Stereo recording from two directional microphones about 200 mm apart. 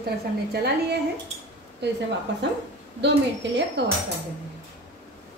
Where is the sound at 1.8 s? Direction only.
55° right (ahead or behind).